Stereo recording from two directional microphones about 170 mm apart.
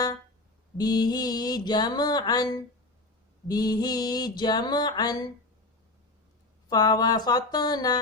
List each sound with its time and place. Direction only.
0.8 s mantra: 25° left (ahead or behind)
6.7 s mantra: 20° left (ahead or behind)